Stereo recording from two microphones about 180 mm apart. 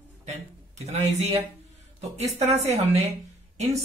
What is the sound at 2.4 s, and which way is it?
Speech, 35° right (ahead or behind).